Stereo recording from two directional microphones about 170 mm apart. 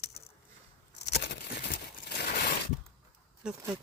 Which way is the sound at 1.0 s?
80° left.